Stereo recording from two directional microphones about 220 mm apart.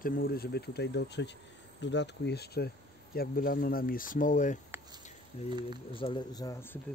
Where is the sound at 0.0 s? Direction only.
40° left (ahead or behind).